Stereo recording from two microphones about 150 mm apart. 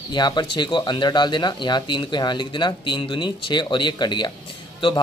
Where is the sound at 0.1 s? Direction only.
30° left (ahead or behind).